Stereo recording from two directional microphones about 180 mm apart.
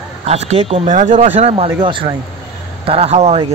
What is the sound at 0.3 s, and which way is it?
A man's voice, 35° right (ahead or behind).